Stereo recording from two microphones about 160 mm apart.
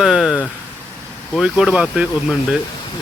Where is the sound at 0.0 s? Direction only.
5° right (ahead or behind).